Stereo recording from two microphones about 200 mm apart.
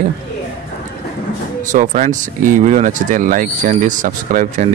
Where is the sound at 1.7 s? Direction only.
40° right (ahead or behind).